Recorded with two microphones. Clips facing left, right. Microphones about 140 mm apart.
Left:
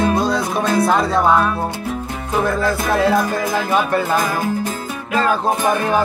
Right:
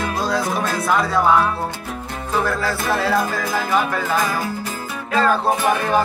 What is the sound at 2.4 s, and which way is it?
Music, 20° left (ahead or behind).